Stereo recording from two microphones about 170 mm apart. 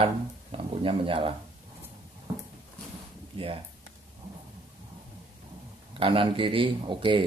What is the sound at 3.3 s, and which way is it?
Speech, 35° right (ahead or behind).